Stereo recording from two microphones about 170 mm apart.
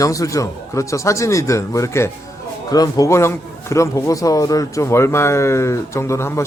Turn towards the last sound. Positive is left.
turn(degrees=15)  # may be behind; listen again after turning